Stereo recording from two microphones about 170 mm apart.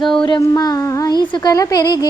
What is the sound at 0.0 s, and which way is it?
Speech, 30° left (ahead or behind).